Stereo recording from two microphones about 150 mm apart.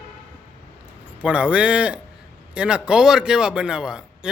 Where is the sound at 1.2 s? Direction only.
5° right (ahead or behind).